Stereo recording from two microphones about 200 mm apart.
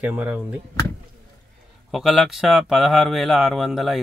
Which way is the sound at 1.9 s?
Centre (ahead or behind).